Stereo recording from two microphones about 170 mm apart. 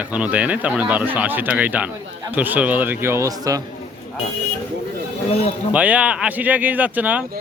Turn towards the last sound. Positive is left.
turn(degrees=-10)  # may be behind; listen again after turning